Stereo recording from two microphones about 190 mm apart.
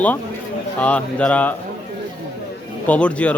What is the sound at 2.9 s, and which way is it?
Speech, 5° left (ahead or behind).